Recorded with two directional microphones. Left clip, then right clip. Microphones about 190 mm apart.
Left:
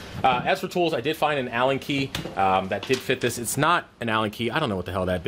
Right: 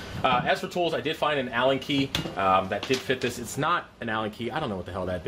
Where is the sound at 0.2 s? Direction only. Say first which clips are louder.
Left 2 dB; 50° left (ahead or behind).